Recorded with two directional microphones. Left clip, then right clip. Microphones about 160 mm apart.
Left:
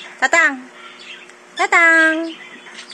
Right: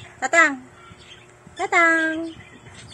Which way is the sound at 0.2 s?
10° right (ahead or behind).